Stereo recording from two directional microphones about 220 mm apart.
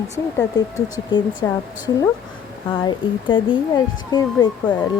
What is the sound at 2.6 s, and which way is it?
Speech, 20° left (ahead or behind).